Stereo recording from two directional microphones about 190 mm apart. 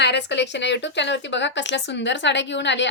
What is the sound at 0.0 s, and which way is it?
Speech, 65° left (ahead or behind).